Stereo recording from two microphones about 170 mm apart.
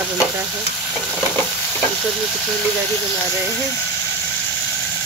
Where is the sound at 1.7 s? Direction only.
5° left (ahead or behind).